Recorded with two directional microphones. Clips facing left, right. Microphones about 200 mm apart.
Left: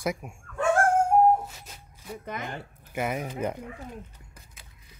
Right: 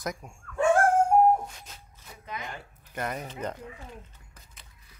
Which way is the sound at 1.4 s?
5° left (ahead or behind).